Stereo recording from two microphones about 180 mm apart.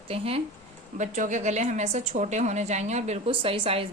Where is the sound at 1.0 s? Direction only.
45° right (ahead or behind).